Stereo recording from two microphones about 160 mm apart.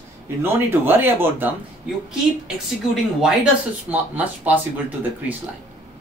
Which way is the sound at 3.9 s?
10° right (ahead or behind).